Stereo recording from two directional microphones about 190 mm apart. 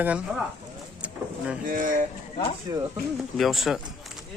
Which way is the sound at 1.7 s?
45° right (ahead or behind).